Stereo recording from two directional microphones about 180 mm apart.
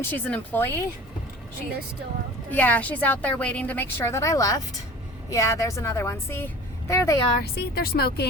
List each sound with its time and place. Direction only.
0.0 s a woman's voice: 10° left (ahead or behind)
2.5 s a woman's voice: 10° left (ahead or behind)
7.5 s speech: 60° left (ahead or behind)